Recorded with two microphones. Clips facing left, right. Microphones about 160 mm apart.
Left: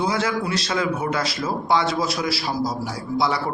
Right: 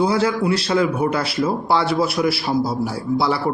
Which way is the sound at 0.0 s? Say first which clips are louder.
Right 5 dB; 30° right (ahead or behind).